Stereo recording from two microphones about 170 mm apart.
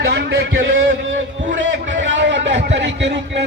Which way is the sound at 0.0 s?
90° right.